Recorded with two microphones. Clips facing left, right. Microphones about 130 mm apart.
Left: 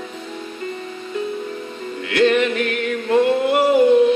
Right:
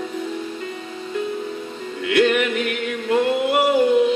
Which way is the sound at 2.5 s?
15° right (ahead or behind).